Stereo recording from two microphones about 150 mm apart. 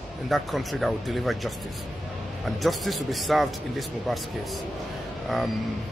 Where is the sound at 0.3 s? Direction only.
Centre (ahead or behind).